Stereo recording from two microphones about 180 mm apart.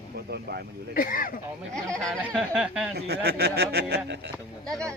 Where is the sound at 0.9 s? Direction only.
50° left (ahead or behind).